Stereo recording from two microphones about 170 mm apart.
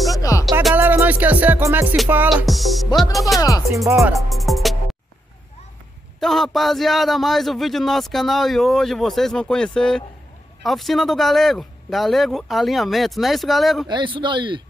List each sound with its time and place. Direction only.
0.1 s music: 20° left (ahead or behind)
0.7 s music: 10° right (ahead or behind)
2.2 s a man's voice: centre (ahead or behind)
3.3 s speech: 20° left (ahead or behind)
4.3 s music: centre (ahead or behind)
6.1 s a man's voice: centre (ahead or behind)
13.8 s a man's voice: 30° right (ahead or behind)